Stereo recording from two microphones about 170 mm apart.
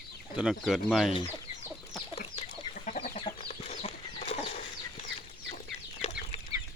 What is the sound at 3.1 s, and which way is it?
Chicken, 35° left (ahead or behind).